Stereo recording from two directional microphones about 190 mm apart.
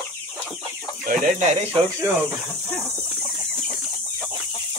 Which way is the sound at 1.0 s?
40° right (ahead or behind).